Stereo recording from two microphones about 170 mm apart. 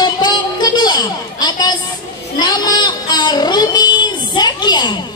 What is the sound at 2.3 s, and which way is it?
Child singing, 25° left (ahead or behind).